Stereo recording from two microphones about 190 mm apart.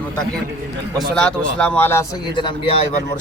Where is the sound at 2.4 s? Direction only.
30° left (ahead or behind).